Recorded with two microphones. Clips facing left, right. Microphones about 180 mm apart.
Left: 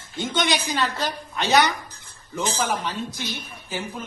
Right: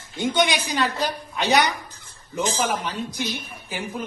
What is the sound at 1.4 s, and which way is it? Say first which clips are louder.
A woman's voice: left 1 dB; 15° right (ahead or behind).